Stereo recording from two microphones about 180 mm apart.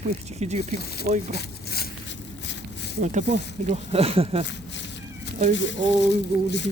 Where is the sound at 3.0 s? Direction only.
45° right (ahead or behind).